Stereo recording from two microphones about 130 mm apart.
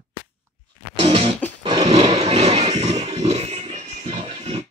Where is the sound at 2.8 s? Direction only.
55° right (ahead or behind).